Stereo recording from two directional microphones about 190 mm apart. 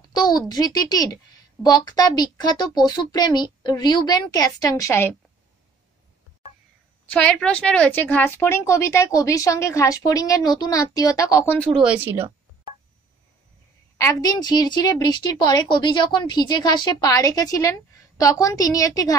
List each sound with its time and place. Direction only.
0.1 s a woman's voice: 20° left (ahead or behind)
7.1 s a woman's voice: 5° left (ahead or behind)
11.7 s speech: 5° right (ahead or behind)
13.9 s a woman's voice: 15° left (ahead or behind)